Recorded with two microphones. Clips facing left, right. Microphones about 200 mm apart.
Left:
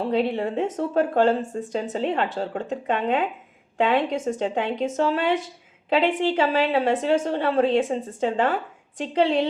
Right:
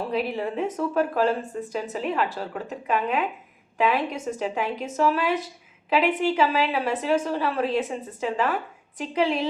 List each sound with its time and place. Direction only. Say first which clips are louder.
0.2 s a woman's voice: left 3 dB; 30° left (ahead or behind)